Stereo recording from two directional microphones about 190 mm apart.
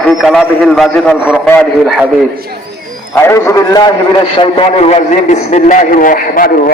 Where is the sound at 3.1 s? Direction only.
15° left (ahead or behind); by 6.7 s 45° left (ahead or behind).